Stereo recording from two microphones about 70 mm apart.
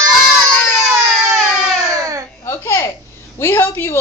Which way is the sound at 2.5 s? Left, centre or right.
Left.